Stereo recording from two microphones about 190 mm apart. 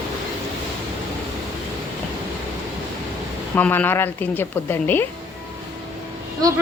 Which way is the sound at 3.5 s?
10° left (ahead or behind).